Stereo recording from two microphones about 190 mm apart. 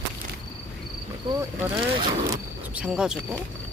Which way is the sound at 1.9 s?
25° right (ahead or behind).